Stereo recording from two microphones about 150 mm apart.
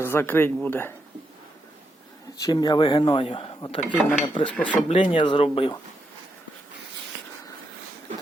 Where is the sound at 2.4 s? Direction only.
25° left (ahead or behind).